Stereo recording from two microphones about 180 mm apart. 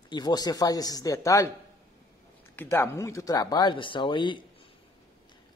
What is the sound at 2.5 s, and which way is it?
Speech, 10° left (ahead or behind).